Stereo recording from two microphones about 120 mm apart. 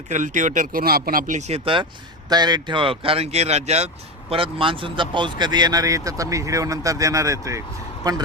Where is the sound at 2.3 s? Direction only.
35° right (ahead or behind); by 3.8 s 65° right (ahead or behind).